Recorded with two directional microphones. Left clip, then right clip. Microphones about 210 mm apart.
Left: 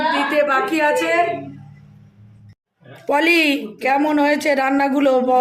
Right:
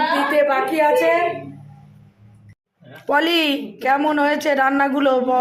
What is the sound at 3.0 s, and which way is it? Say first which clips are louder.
Speech: left 2 dB; 10° left (ahead or behind).